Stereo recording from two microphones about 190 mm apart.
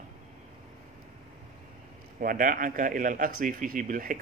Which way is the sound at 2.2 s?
45° right (ahead or behind).